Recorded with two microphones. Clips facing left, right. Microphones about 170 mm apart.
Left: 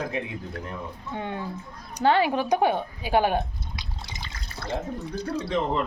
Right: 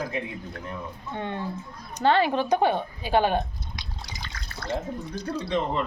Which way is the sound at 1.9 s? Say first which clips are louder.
Even; 10° left (ahead or behind).